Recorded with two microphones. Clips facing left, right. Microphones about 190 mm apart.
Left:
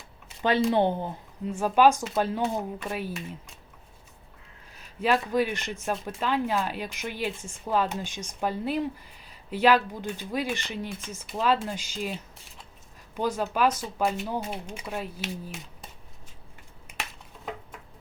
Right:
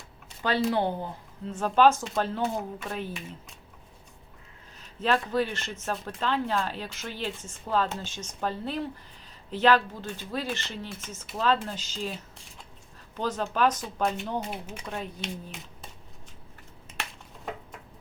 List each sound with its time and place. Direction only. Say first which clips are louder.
0.7 s speech: left 3 dB; 20° left (ahead or behind)
1.5 s speech: left 1 dB; 10° left (ahead or behind)
4.9 s speech: left 2 dB; 10° left (ahead or behind)
13.1 s speech: left 1 dB; 10° left (ahead or behind)
17.0 s a sound: even; centre (ahead or behind)